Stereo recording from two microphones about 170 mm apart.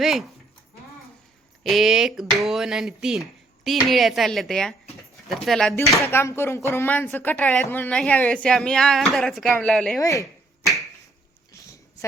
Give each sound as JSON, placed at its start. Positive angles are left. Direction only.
{"t": 0.0, "sound": "speech", "side_deg": 0}
{"t": 1.6, "sound": "speech", "side_deg": 0}
{"t": 6.0, "sound": "speech", "side_deg": 15}
{"t": 10.0, "sound": "speech", "side_deg": 20}
{"t": 11.5, "sound": "a sound", "side_deg": 15}